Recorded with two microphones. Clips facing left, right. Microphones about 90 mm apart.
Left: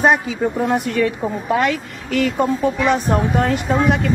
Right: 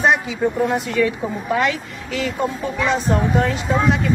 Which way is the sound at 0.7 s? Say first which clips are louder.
Left 1 dB; 55° left (ahead or behind).